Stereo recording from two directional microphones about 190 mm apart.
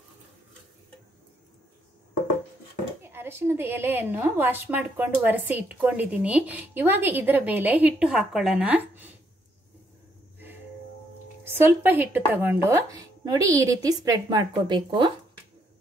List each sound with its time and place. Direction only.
3.0 s a woman's voice: 10° right (ahead or behind)
11.4 s a woman's voice: 10° right (ahead or behind)